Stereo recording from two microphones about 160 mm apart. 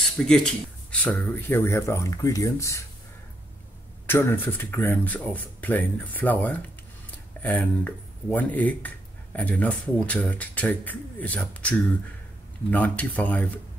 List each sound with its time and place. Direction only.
0.0 s speech: 5° left (ahead or behind); by 2.8 s 20° left (ahead or behind)
4.1 s speech: 15° left (ahead or behind)
12.7 s speech: 10° left (ahead or behind)